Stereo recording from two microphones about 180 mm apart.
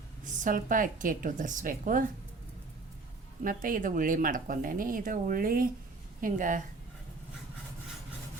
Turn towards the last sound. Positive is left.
turn(degrees=-45)  # may be behind; listen again after turning